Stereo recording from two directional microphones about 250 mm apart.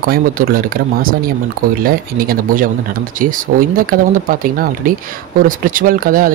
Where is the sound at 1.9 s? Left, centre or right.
Right.